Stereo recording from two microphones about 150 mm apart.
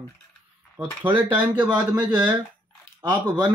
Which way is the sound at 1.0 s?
10° right (ahead or behind).